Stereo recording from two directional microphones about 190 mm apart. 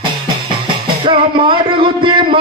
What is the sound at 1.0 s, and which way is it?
Music, 25° right (ahead or behind).